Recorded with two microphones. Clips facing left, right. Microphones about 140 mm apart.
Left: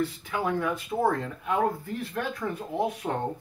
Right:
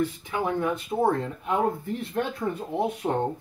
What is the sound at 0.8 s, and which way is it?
Speech, 25° right (ahead or behind).